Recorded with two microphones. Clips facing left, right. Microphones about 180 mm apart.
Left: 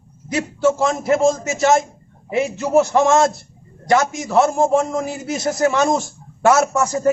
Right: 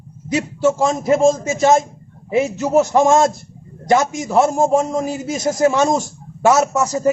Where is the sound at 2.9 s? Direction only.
25° right (ahead or behind).